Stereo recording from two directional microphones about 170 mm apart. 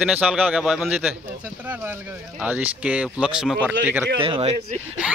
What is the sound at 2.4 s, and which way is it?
A man's voice, 10° right (ahead or behind).